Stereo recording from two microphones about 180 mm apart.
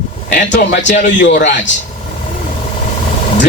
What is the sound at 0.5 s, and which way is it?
Speech, 80° left.